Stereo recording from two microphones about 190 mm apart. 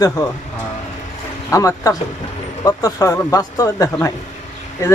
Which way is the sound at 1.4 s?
15° left (ahead or behind).